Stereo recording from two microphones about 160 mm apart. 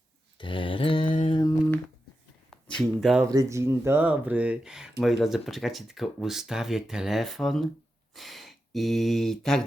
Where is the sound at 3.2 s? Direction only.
20° right (ahead or behind).